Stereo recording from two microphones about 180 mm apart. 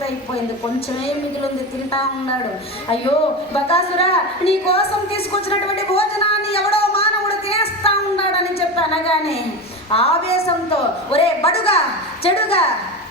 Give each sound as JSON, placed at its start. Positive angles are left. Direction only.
{"t": 3.5, "sound": "a woman's voice", "side_deg": 30}
{"t": 6.5, "sound": "a sound", "side_deg": 30}
{"t": 9.9, "sound": "a woman's voice", "side_deg": 35}